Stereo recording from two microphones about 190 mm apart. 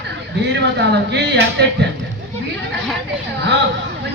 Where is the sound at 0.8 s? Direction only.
65° right (ahead or behind).